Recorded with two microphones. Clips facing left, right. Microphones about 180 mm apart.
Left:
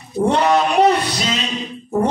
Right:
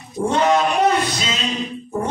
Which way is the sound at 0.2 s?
60° left (ahead or behind).